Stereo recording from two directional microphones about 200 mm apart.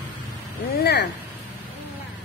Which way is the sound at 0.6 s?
50° left (ahead or behind).